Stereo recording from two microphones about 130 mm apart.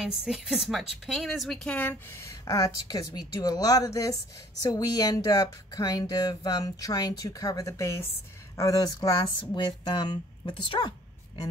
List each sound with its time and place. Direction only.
0.2 s speech: 5° right (ahead or behind); by 10.9 s 35° left (ahead or behind)